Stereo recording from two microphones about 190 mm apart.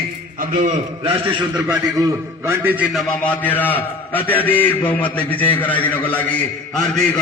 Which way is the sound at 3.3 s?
10° left (ahead or behind).